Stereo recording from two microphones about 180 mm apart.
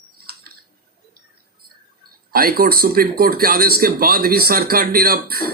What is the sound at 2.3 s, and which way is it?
Speech, 55° right (ahead or behind).